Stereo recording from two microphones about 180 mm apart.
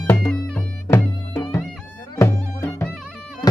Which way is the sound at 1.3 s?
20° left (ahead or behind).